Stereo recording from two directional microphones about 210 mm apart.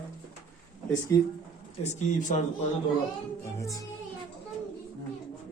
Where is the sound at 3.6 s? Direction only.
15° left (ahead or behind).